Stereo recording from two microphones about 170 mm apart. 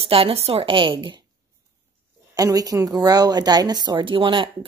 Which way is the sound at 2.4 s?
20° right (ahead or behind).